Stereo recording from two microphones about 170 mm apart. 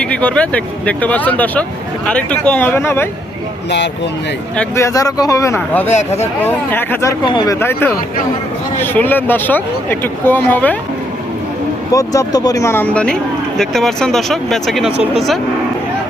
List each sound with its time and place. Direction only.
0.0 s speech: 5° left (ahead or behind)
4.5 s speech: 15° left (ahead or behind)
5.9 s speech: 40° left (ahead or behind)
6.4 s speech: 10° left (ahead or behind)
7.3 s speech: 25° left (ahead or behind)
11.9 s speech: 20° left (ahead or behind); by 15.0 s 5° right (ahead or behind)